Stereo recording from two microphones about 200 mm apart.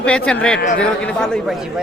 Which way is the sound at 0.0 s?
5° left (ahead or behind).